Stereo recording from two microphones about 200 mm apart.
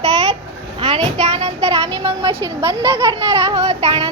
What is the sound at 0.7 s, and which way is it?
A child's voice, 30° right (ahead or behind).